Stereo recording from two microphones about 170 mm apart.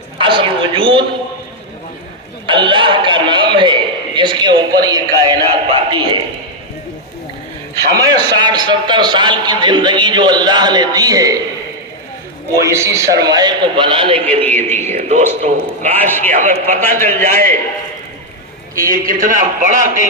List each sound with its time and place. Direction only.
0.2 s a woman's voice: 30° right (ahead or behind)
2.5 s a man's voice: 30° right (ahead or behind)
7.9 s a man's voice: 25° right (ahead or behind)
12.5 s a man's voice: 15° right (ahead or behind)
14.3 s a man's voice: 10° left (ahead or behind)
14.9 s a man's voice: 45° right (ahead or behind)
16.0 s a man's voice: 10° left (ahead or behind)
16.3 s a man's voice: 50° right (ahead or behind)
18.8 s a man's voice: 55° right (ahead or behind)